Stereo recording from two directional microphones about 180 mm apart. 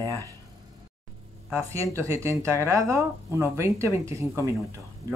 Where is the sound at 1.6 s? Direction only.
15° right (ahead or behind).